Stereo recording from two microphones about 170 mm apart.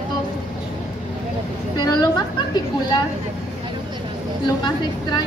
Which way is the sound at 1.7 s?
25° left (ahead or behind).